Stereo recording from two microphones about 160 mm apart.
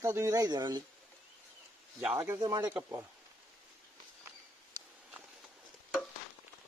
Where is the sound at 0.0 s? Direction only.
20° right (ahead or behind).